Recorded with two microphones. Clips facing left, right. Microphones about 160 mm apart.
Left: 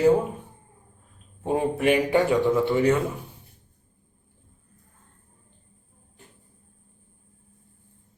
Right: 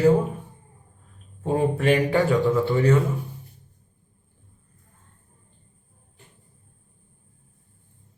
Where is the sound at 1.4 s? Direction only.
15° left (ahead or behind).